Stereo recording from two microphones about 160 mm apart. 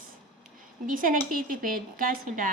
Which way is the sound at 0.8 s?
60° right (ahead or behind).